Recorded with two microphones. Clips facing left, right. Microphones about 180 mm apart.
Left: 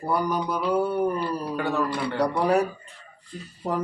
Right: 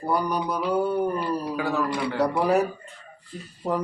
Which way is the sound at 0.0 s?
Centre (ahead or behind).